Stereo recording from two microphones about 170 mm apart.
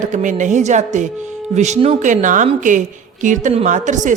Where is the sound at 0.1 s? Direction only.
45° right (ahead or behind).